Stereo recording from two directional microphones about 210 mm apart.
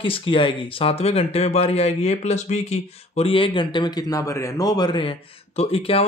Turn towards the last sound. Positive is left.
turn(degrees=25)  # may be behind; listen again after turning